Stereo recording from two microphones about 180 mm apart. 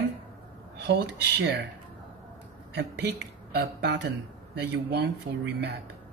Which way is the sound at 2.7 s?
65° right (ahead or behind).